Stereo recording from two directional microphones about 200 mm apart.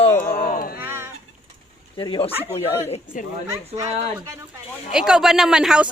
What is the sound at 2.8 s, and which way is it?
Speech, 35° left (ahead or behind).